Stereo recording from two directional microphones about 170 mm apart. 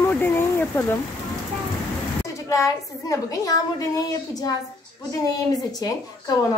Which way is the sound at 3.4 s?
20° left (ahead or behind).